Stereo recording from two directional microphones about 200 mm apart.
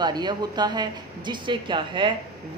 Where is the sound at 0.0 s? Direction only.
20° right (ahead or behind).